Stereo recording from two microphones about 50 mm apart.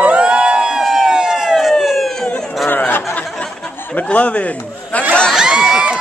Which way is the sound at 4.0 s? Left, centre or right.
Left.